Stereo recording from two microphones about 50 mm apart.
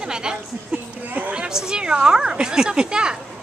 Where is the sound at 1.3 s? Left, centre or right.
Centre.